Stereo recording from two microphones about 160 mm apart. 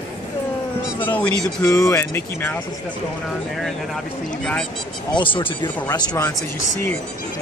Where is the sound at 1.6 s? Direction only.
20° left (ahead or behind).